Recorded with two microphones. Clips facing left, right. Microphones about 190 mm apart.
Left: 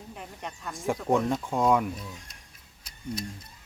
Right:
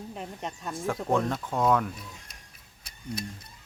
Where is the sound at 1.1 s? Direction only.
15° left (ahead or behind).